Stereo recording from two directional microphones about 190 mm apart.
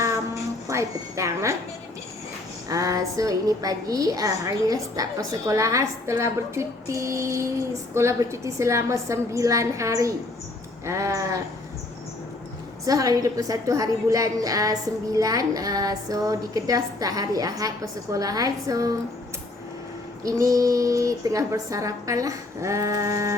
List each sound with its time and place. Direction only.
0.7 s a woman's voice: 15° right (ahead or behind)
2.6 s a woman's voice: 20° right (ahead or behind)
12.8 s a woman's voice: 15° right (ahead or behind)
20.2 s a woman's voice: 15° right (ahead or behind)